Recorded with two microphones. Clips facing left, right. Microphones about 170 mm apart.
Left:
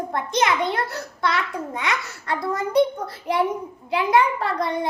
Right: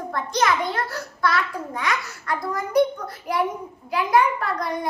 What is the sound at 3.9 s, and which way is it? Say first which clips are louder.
Speech: left 1 dB; 25° left (ahead or behind).